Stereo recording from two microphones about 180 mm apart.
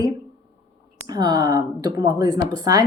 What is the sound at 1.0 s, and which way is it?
Speech, 20° right (ahead or behind).